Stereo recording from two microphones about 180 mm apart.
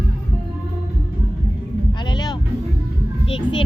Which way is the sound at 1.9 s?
25° left (ahead or behind).